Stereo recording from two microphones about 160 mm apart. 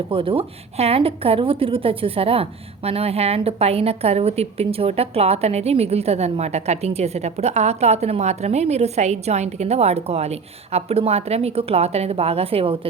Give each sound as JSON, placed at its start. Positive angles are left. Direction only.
{"t": 0.1, "sound": "a woman's voice", "side_deg": -35}